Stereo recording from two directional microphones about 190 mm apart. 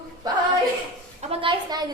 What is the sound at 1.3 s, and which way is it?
Speech, 25° right (ahead or behind).